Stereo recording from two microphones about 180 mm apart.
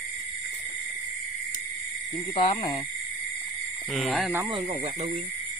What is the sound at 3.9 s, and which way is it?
Speech, centre (ahead or behind).